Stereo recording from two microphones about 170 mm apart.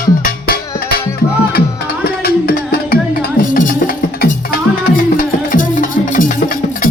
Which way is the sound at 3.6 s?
55° left (ahead or behind).